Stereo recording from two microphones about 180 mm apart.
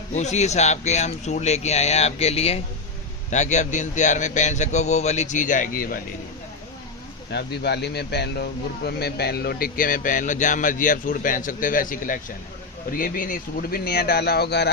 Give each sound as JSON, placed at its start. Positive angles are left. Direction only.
{"t": 0.1, "sound": "a man's voice", "side_deg": 40}
{"t": 7.3, "sound": "speech", "side_deg": 70}